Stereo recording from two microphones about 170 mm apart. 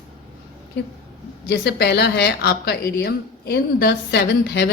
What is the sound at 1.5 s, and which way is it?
A woman's voice, 75° left (ahead or behind).